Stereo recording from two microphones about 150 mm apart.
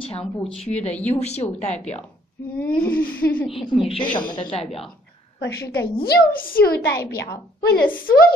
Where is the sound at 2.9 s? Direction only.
75° left (ahead or behind).